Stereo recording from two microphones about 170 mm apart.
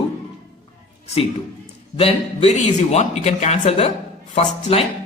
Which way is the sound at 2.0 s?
35° left (ahead or behind).